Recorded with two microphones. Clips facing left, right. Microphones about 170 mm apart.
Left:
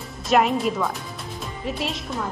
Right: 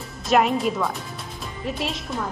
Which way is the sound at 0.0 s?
Centre (ahead or behind).